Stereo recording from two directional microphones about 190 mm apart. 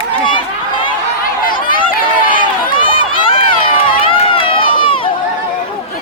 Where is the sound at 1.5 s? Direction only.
45° left (ahead or behind).